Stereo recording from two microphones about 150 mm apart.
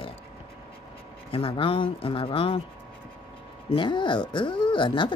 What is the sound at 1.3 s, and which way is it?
Speech, 35° left (ahead or behind).